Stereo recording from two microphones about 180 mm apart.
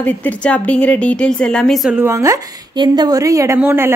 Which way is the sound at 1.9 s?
15° right (ahead or behind).